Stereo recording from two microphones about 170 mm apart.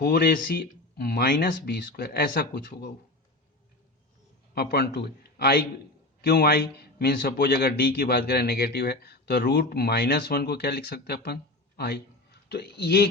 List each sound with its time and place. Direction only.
0.0 s a man's voice: 65° left (ahead or behind)
4.5 s a man's voice: 70° left (ahead or behind)